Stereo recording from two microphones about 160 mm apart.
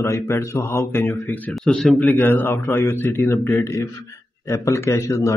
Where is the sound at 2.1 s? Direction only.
15° left (ahead or behind).